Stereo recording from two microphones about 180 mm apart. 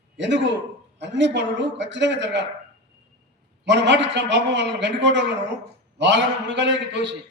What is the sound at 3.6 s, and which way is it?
A man's voice, 75° right (ahead or behind).